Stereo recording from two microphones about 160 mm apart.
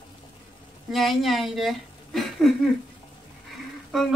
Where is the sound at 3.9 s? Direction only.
Centre (ahead or behind).